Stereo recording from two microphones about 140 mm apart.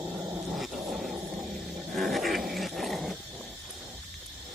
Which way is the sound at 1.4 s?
Centre (ahead or behind).